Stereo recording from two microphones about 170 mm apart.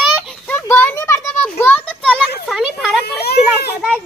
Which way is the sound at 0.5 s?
15° left (ahead or behind).